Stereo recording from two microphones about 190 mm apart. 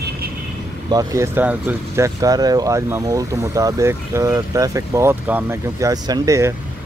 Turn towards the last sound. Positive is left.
turn(degrees=-15)  # may be behind; listen again after turning